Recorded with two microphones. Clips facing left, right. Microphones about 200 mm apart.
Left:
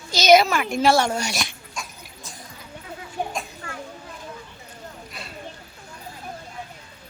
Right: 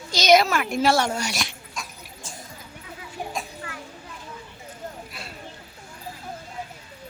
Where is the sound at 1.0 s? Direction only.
35° left (ahead or behind).